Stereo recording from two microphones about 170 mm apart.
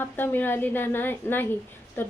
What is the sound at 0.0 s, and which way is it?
A woman's voice, 10° left (ahead or behind).